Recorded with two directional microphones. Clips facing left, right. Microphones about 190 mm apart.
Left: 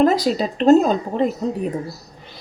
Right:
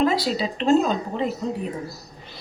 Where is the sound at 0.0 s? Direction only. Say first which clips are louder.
Left 5 dB; 45° left (ahead or behind).